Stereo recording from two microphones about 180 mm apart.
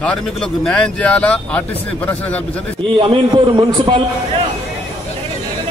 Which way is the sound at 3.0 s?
25° right (ahead or behind).